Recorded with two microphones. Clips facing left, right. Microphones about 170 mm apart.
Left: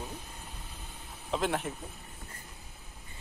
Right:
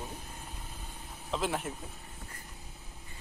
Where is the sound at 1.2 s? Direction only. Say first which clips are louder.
Left 2 dB; centre (ahead or behind).